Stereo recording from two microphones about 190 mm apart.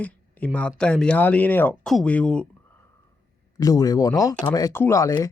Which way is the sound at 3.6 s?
20° left (ahead or behind).